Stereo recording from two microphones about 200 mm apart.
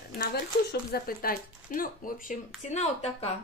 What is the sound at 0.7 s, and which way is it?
Speech, 50° left (ahead or behind).